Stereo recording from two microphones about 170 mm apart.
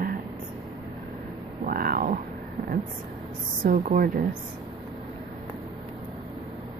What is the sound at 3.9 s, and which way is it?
Speech, 60° right (ahead or behind).